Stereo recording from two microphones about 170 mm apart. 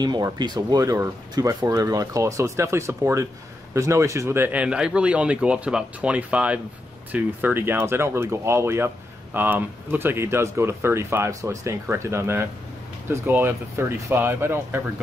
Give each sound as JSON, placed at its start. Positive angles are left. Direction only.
{"t": 0.0, "sound": "speech", "side_deg": -25}